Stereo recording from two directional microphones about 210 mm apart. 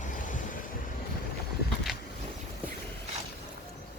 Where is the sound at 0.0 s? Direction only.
40° left (ahead or behind).